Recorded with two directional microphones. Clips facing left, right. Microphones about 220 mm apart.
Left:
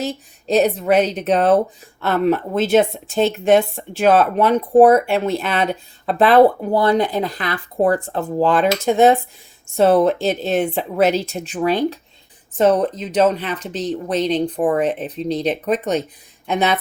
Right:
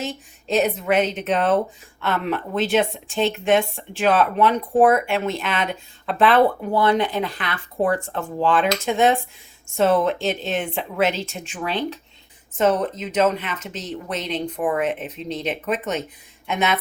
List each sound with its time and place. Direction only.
0.0 s speech: 35° left (ahead or behind)